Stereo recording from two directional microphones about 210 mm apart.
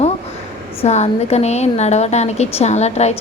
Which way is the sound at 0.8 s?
30° left (ahead or behind).